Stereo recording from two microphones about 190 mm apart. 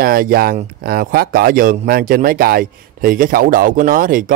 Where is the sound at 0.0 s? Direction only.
50° right (ahead or behind).